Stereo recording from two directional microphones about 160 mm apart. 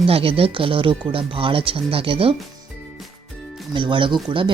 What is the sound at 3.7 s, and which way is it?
Speech, 30° right (ahead or behind).